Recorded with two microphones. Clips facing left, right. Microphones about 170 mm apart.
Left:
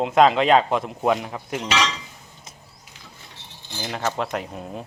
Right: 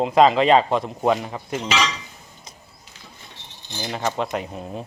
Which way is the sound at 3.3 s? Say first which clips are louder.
Right 1 dB; 20° right (ahead or behind).